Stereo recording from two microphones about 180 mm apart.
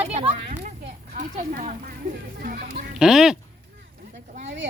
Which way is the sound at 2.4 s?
55° right (ahead or behind).